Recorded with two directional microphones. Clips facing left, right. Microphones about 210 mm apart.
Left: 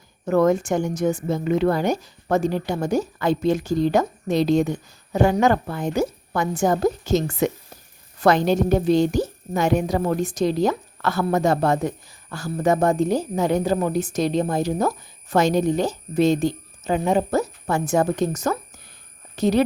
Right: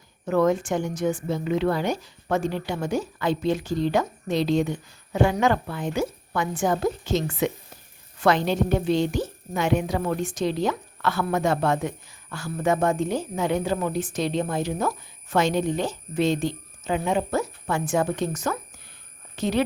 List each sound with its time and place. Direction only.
0.3 s a woman's voice: 45° left (ahead or behind)